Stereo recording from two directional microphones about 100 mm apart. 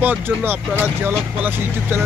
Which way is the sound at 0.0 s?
15° right (ahead or behind).